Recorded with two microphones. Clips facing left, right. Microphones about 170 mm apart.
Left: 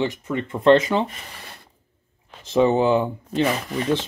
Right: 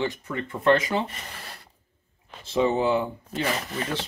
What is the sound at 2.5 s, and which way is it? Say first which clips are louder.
Speech: left 5 dB; 20° left (ahead or behind).